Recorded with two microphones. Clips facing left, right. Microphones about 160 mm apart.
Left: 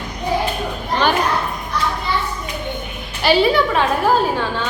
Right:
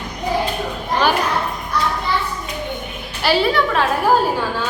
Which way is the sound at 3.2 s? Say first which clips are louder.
Left 2 dB; centre (ahead or behind).